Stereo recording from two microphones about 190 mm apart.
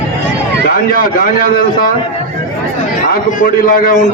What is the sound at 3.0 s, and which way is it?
Speech, 50° left (ahead or behind).